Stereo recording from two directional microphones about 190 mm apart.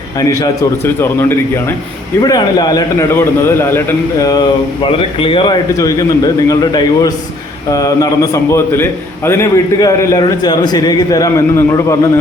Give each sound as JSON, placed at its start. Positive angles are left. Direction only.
{"t": 0.9, "sound": "a man's voice", "side_deg": 10}
{"t": 4.8, "sound": "a man's voice", "side_deg": 30}